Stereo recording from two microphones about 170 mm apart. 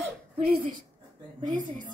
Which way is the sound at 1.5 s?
45° right (ahead or behind).